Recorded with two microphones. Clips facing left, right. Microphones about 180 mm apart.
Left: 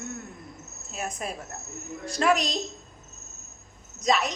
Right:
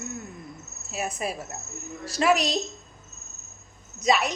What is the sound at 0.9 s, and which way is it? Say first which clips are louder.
A woman's voice: right 3 dB; 5° right (ahead or behind).